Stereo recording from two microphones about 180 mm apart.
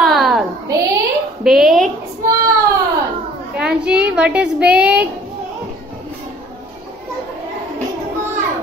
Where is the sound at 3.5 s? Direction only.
5° right (ahead or behind).